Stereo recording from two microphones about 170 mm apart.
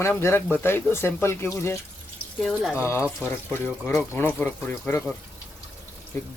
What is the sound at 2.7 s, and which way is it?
Speech, 15° left (ahead or behind).